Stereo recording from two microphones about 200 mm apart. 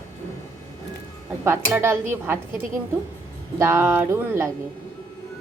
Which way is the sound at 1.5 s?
10° right (ahead or behind).